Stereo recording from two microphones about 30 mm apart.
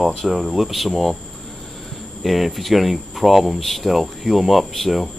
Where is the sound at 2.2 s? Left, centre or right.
Centre.